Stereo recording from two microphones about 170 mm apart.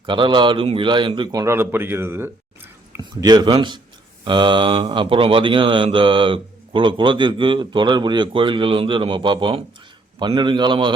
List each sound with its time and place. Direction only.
0.0 s speech: 30° right (ahead or behind)